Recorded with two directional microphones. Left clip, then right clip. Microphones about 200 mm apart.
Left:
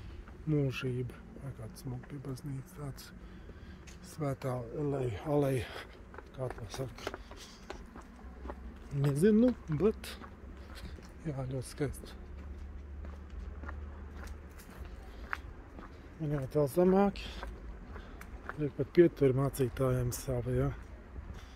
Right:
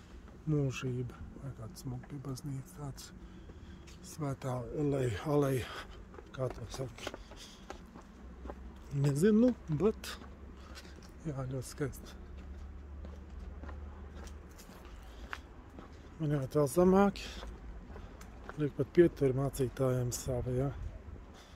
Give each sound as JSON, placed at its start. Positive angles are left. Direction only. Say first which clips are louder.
{"t": 0.5, "sound": "speech", "louder": "left 2 dB", "side_deg": 0}
{"t": 4.2, "sound": "speech", "louder": "left 3 dB", "side_deg": 10}
{"t": 4.7, "sound": "speech", "louder": "right 4 dB", "side_deg": -30}
{"t": 5.3, "sound": "speech", "louder": "left 1 dB", "side_deg": -10}
{"t": 9.0, "sound": "speech", "louder": "left 1 dB", "side_deg": -5}
{"t": 16.2, "sound": "speech", "louder": "even", "side_deg": -15}
{"t": 18.9, "sound": "speech", "louder": "left 2 dB", "side_deg": 0}